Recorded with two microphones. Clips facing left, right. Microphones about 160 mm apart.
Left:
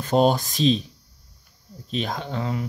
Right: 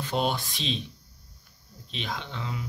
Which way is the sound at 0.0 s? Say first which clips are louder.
Left 9 dB; 40° left (ahead or behind).